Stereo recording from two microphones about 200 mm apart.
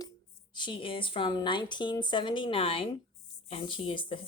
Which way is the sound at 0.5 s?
25° left (ahead or behind).